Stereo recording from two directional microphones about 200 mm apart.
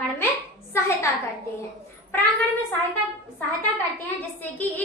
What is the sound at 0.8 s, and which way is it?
Speech, 10° left (ahead or behind).